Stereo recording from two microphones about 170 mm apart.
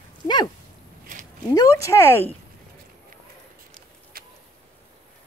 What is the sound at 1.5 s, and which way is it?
Speech, 20° left (ahead or behind).